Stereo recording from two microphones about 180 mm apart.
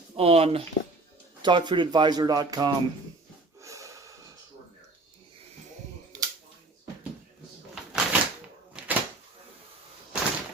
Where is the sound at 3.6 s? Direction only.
20° right (ahead or behind).